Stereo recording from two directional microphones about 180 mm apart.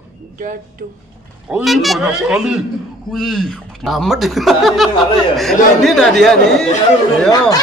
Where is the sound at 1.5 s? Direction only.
Centre (ahead or behind).